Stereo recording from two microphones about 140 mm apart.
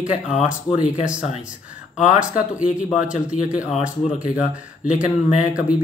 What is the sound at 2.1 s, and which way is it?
Speech, 10° right (ahead or behind).